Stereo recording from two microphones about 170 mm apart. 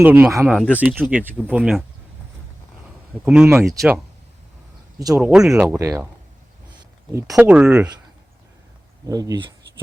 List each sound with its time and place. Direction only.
0.0 s speech: 10° right (ahead or behind)
0.4 s speech: 5° left (ahead or behind)
0.8 s speech: 10° right (ahead or behind)
3.2 s speech: 10° right (ahead or behind)
4.9 s speech: 20° right (ahead or behind)
5.2 s speech: 5° right (ahead or behind)
5.5 s speech: 15° right (ahead or behind)
7.1 s speech: 15° right (ahead or behind)
7.3 s speech: 5° right (ahead or behind)
9.0 s speech: 20° right (ahead or behind)